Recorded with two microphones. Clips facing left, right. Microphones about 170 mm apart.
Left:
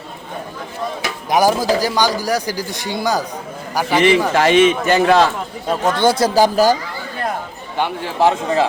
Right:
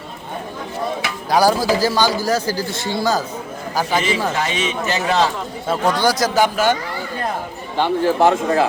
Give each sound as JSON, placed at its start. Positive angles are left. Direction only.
{"t": 1.3, "sound": "a man's voice", "side_deg": 20}
{"t": 4.4, "sound": "a man's voice", "side_deg": 65}
{"t": 5.6, "sound": "speech", "side_deg": 20}
{"t": 7.8, "sound": "a man's voice", "side_deg": 20}